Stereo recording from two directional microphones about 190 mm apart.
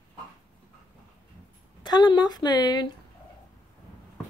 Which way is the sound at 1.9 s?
25° left (ahead or behind).